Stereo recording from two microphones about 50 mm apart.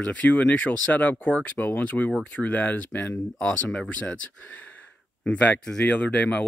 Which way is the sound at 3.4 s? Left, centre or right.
Left.